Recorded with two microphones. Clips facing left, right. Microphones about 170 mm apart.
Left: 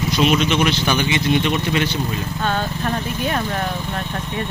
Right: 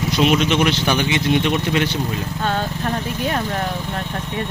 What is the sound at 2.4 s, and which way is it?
Speech, 30° right (ahead or behind).